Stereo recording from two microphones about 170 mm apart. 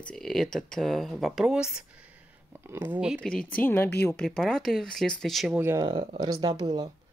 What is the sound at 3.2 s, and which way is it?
Speech, 5° left (ahead or behind).